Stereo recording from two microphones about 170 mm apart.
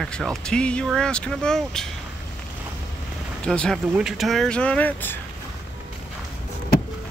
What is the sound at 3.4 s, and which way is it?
Speech, 5° left (ahead or behind).